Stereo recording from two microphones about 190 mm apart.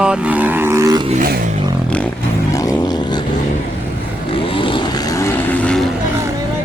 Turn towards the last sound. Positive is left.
turn(degrees=5)  # may be behind; listen again after turning